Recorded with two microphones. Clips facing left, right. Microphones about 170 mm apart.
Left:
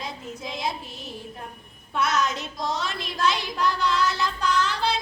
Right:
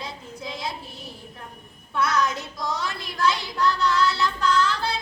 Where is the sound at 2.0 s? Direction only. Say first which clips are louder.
Right 1 dB; 20° left (ahead or behind).